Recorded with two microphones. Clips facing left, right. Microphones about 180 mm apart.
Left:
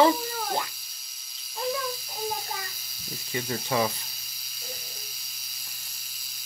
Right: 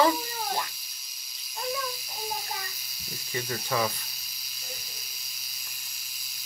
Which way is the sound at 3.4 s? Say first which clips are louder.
Left 2 dB; 30° left (ahead or behind).